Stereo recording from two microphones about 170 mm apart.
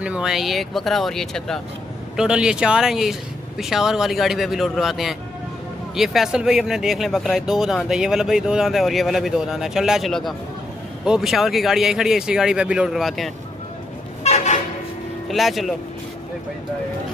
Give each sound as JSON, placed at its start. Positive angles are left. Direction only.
{"t": 0.0, "sound": "speech", "side_deg": -5}
{"t": 14.2, "sound": "vehicle", "side_deg": 40}
{"t": 15.2, "sound": "speech", "side_deg": 0}